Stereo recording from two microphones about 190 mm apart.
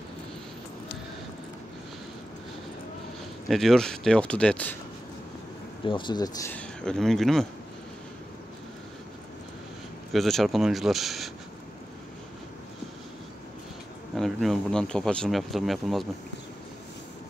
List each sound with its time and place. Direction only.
3.4 s speech: centre (ahead or behind)
5.9 s speech: 25° left (ahead or behind)
6.5 s speech: 5° left (ahead or behind)
10.1 s speech: centre (ahead or behind)
14.1 s speech: centre (ahead or behind)